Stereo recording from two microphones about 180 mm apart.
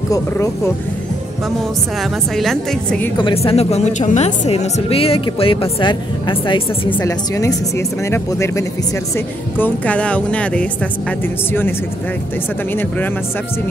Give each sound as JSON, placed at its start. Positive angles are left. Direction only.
{"t": 2.3, "sound": "a woman's voice", "side_deg": 0}
{"t": 3.2, "sound": "speech", "side_deg": 30}
{"t": 6.9, "sound": "speech", "side_deg": 15}